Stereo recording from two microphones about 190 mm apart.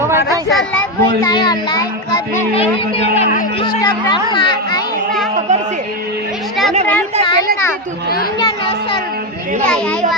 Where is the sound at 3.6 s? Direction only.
20° left (ahead or behind).